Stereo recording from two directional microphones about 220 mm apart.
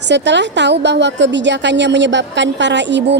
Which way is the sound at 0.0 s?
50° right (ahead or behind).